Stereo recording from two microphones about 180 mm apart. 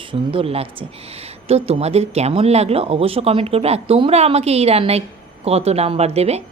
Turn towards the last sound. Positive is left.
turn(degrees=-35)  # may be behind; listen again after turning